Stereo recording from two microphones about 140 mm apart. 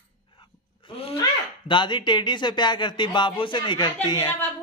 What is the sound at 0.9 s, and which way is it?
Speech, 45° left (ahead or behind).